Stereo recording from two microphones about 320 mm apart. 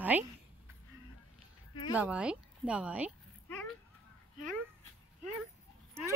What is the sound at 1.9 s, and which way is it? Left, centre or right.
Speech, centre.